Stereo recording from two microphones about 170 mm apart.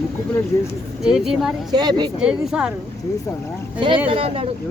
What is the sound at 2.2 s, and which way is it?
Speech, 5° right (ahead or behind).